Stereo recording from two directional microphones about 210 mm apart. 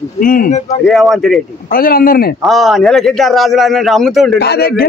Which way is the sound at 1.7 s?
45° left (ahead or behind).